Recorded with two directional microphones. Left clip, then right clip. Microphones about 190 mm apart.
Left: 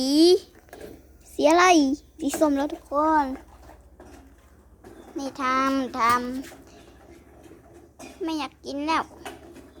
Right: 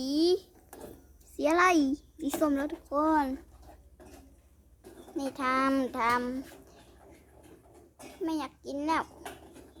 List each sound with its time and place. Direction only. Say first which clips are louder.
0.0 s a sound: left 9 dB; 45° left (ahead or behind)
1.4 s a child's voice: left 7 dB; 10° left (ahead or behind)
2.9 s speech: left 5 dB; 10° right (ahead or behind)
5.1 s a child's voice: left 5 dB; 5° right (ahead or behind)
8.2 s a child's voice: left 4 dB; 5° left (ahead or behind)